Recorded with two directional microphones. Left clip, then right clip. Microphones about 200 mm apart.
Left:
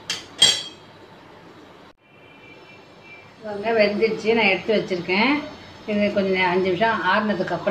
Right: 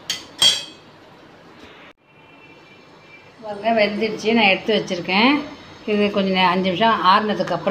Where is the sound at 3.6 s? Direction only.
55° right (ahead or behind).